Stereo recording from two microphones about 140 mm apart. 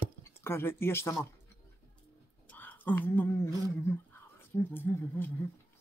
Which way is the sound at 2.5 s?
15° left (ahead or behind).